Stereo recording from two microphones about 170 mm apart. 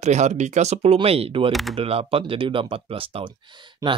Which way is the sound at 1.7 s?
35° right (ahead or behind).